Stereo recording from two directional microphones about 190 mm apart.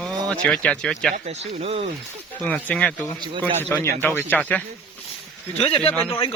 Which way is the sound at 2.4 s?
5° left (ahead or behind).